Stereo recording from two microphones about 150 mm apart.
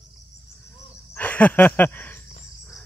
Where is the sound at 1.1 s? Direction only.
10° left (ahead or behind).